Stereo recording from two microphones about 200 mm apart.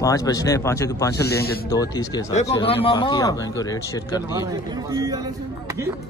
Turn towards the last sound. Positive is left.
turn(degrees=-15)  # may be behind; listen again after turning